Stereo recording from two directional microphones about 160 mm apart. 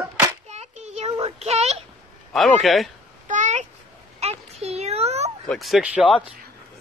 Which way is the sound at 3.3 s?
50° right (ahead or behind).